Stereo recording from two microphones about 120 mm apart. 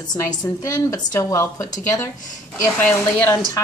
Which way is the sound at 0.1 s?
30° left (ahead or behind).